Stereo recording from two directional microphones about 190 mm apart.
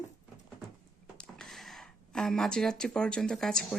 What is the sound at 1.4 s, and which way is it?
Speech, centre (ahead or behind).